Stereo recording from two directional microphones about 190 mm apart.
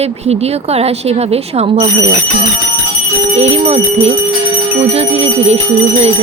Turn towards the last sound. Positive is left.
turn(degrees=-30)  # may be behind; listen again after turning